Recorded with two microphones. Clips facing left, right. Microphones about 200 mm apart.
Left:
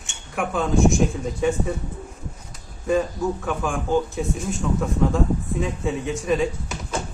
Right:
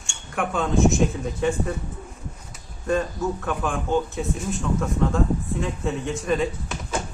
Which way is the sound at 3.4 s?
Centre (ahead or behind).